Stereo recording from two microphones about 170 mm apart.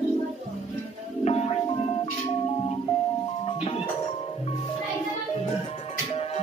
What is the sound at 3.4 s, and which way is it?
Music, 35° left (ahead or behind).